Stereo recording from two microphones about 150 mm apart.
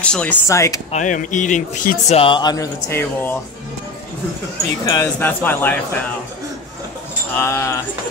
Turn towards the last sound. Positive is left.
turn(degrees=20)  # may be behind; listen again after turning